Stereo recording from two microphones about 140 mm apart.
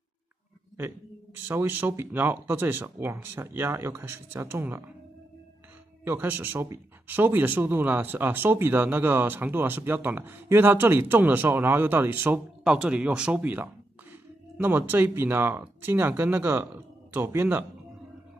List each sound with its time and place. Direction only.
0.7 s speech: 15° right (ahead or behind)
6.0 s speech: 15° right (ahead or behind)